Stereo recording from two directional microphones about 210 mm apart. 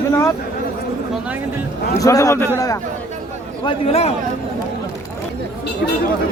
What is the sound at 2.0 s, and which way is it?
Speech, 15° left (ahead or behind).